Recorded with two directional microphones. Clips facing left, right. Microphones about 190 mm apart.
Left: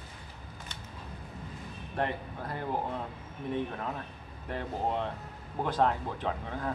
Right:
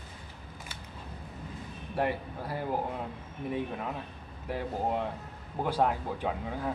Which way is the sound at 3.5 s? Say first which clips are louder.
Even; 10° right (ahead or behind).